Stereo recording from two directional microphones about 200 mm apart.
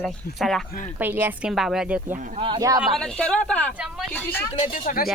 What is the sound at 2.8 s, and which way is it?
Speech, 5° left (ahead or behind).